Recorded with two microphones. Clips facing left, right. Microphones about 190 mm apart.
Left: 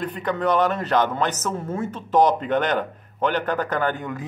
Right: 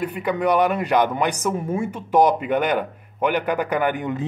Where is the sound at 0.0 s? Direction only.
10° right (ahead or behind).